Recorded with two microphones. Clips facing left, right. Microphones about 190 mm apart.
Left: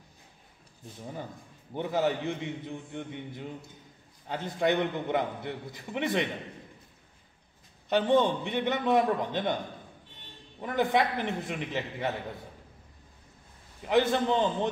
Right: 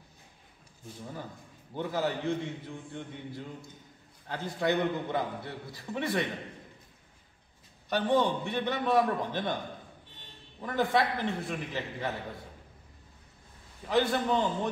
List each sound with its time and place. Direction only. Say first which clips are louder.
1.8 s a man's voice: left 3 dB; 20° left (ahead or behind)
7.9 s a man's voice: left 3 dB; 20° left (ahead or behind)
10.6 s a man's voice: left 1 dB; 20° left (ahead or behind)
13.8 s a man's voice: left 2 dB; 20° left (ahead or behind)